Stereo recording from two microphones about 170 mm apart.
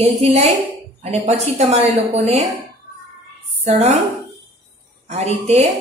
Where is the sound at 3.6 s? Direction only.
40° right (ahead or behind).